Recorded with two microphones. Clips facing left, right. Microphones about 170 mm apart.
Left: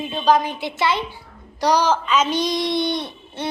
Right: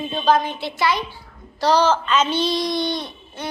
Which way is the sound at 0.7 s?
25° left (ahead or behind).